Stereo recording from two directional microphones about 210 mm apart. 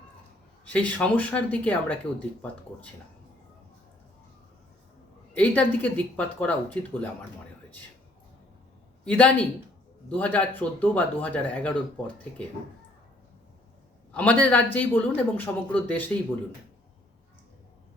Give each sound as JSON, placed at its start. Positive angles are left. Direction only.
{"t": 0.6, "sound": "speech", "side_deg": 5}
{"t": 5.4, "sound": "speech", "side_deg": 5}
{"t": 9.0, "sound": "a man's voice", "side_deg": 5}
{"t": 14.1, "sound": "speech", "side_deg": 5}